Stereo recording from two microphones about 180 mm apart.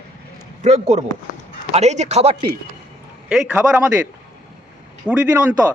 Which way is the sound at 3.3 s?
5° right (ahead or behind).